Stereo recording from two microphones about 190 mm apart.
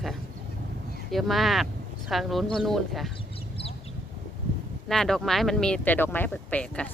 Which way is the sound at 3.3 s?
30° left (ahead or behind).